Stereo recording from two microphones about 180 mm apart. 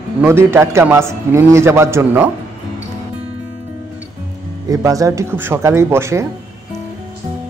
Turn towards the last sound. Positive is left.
turn(degrees=-15)  # may be behind; listen again after turning